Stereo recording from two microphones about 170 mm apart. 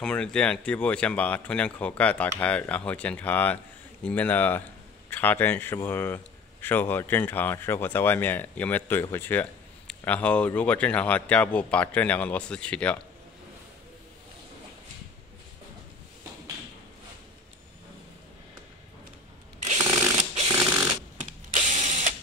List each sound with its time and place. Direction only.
0.0 s speech: 5° left (ahead or behind)
19.6 s shuffling cards: 40° right (ahead or behind)